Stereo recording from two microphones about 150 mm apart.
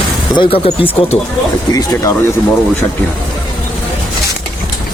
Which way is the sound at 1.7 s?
25° left (ahead or behind).